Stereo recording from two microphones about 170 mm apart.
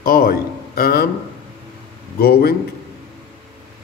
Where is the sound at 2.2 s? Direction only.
65° left (ahead or behind).